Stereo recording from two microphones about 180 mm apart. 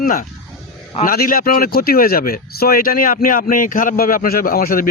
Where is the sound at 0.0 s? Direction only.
50° left (ahead or behind).